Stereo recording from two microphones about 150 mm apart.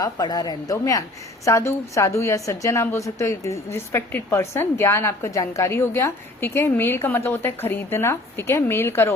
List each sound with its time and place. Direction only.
0.0 s a woman's voice: 25° left (ahead or behind)